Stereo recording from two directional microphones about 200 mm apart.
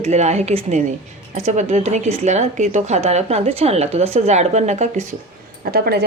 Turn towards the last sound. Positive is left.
turn(degrees=-50)  # may be behind; listen again after turning